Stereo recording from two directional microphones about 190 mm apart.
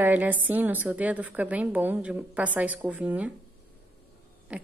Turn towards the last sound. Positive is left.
turn(degrees=-5)  # may be behind; listen again after turning